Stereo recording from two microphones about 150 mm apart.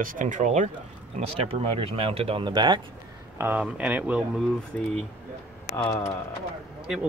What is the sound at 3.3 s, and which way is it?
Speech, 15° right (ahead or behind).